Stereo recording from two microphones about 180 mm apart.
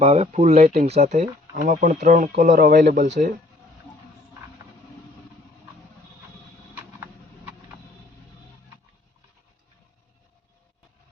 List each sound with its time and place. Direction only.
0.0 s speech: 35° right (ahead or behind)
0.5 s speech: 45° right (ahead or behind)